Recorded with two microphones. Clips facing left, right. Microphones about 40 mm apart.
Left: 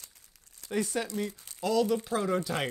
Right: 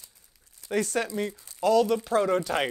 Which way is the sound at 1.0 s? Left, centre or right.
Right.